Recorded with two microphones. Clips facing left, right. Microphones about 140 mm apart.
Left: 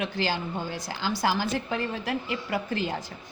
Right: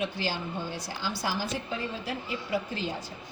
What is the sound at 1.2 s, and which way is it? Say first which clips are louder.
A woman's voice: left 6 dB; 80° left.